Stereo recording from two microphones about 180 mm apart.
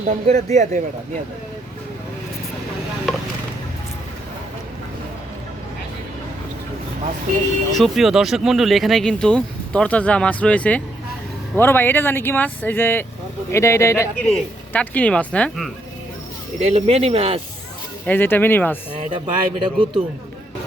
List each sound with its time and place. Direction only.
0.1 s speech: 40° right (ahead or behind)
7.8 s speech: centre (ahead or behind)
16.6 s speech: 35° right (ahead or behind)
18.0 s speech: 10° left (ahead or behind)
18.9 s speech: 25° right (ahead or behind)